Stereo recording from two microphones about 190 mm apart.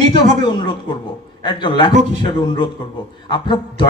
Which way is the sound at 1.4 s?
25° left (ahead or behind).